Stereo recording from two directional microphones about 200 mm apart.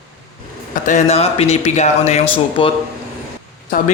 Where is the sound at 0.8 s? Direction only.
35° left (ahead or behind).